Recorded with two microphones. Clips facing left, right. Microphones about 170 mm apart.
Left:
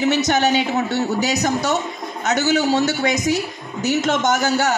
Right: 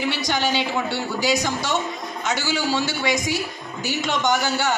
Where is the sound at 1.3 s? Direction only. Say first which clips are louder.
Left 3 dB; 40° left (ahead or behind).